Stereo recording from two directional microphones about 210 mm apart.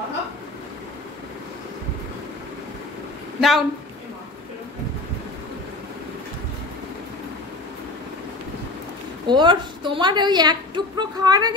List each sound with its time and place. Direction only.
3.3 s a woman's voice: centre (ahead or behind)
9.3 s a woman's voice: 20° right (ahead or behind)